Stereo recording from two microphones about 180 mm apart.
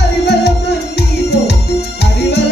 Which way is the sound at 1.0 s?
65° left (ahead or behind).